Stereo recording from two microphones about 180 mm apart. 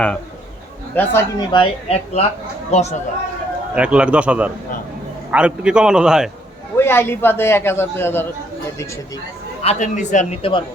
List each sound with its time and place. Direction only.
0.9 s a man's voice: 15° left (ahead or behind)
1.5 s speech: 30° left (ahead or behind)
3.8 s a man's voice: 5° right (ahead or behind)
6.7 s a man's voice: 10° left (ahead or behind)
9.6 s speech: 45° left (ahead or behind)